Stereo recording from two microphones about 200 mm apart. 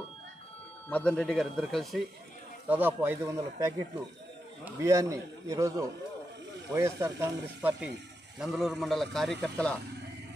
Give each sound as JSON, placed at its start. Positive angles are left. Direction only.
{"t": 0.8, "sound": "a man's voice", "side_deg": 5}
{"t": 2.7, "sound": "a man's voice", "side_deg": -10}